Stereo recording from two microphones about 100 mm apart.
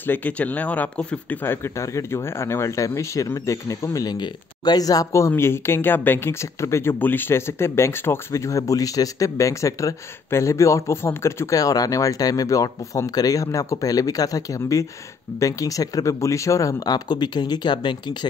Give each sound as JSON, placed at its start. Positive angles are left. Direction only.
{"t": 0.0, "sound": "speech", "side_deg": 20}